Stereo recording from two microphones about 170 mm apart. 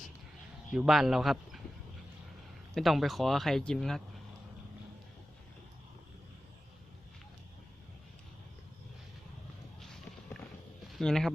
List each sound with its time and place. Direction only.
0.7 s a man's voice: centre (ahead or behind)
2.7 s speech: centre (ahead or behind)
10.9 s speech: centre (ahead or behind)